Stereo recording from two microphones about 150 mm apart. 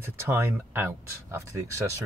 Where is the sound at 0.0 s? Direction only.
15° right (ahead or behind).